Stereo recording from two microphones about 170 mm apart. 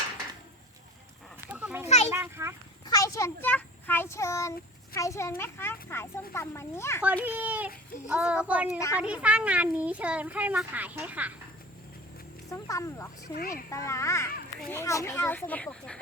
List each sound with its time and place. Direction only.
1.5 s a sound: 10° right (ahead or behind)
2.8 s a child's voice: 20° left (ahead or behind)
7.0 s a child's voice: 10° right (ahead or behind)
12.5 s speech: 20° left (ahead or behind)